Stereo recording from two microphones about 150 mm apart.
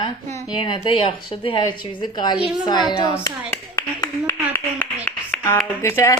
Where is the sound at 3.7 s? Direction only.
20° left (ahead or behind).